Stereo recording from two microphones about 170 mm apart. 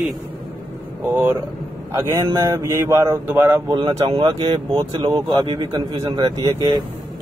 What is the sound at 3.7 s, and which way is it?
Speech, 25° right (ahead or behind).